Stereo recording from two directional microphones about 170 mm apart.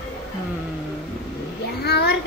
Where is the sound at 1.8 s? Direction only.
75° left (ahead or behind).